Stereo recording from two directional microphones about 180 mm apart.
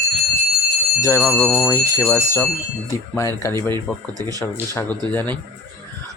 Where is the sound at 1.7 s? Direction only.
15° left (ahead or behind).